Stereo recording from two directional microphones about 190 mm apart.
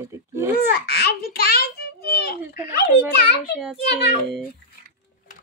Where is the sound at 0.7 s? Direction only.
55° left (ahead or behind).